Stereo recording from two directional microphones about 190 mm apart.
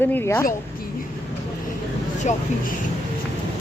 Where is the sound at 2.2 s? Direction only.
40° left (ahead or behind).